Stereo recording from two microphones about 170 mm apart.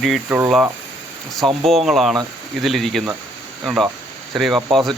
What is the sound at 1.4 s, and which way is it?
Speech, centre (ahead or behind).